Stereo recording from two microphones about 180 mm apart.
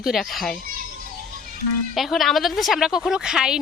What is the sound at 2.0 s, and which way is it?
A woman's voice, centre (ahead or behind).